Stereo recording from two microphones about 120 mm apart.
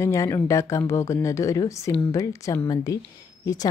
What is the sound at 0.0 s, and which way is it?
Speech, 25° left (ahead or behind).